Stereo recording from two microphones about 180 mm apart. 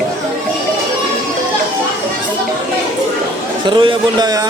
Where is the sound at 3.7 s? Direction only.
25° right (ahead or behind).